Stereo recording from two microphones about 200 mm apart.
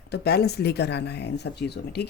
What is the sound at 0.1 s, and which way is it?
A woman's voice, 55° left (ahead or behind).